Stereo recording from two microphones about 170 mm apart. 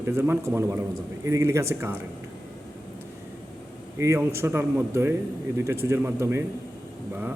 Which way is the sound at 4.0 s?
15° right (ahead or behind).